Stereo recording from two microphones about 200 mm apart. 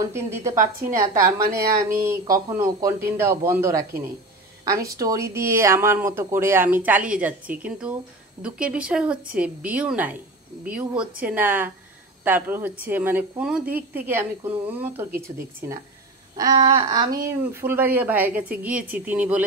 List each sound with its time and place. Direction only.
0.0 s speech: 15° right (ahead or behind)
0.6 s a woman's voice: 40° right (ahead or behind)
0.9 s speech: 15° right (ahead or behind)
16.3 s a sound: 20° right (ahead or behind)
17.5 s speech: 10° right (ahead or behind)